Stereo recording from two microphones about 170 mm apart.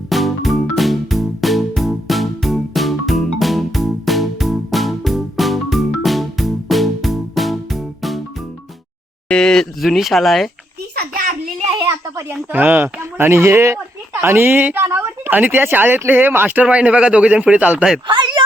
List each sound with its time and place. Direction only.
0.1 s music: centre (ahead or behind)
9.3 s speech: 5° left (ahead or behind)
10.9 s a sound: 55° right (ahead or behind)
11.9 s speech: 15° right (ahead or behind)
18.1 s speech: 25° right (ahead or behind)